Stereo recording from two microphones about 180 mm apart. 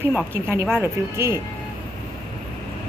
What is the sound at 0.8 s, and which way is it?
Speech, 15° right (ahead or behind).